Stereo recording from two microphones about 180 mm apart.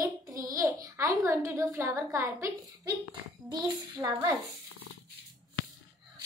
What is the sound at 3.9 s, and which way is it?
Speech, 20° right (ahead or behind).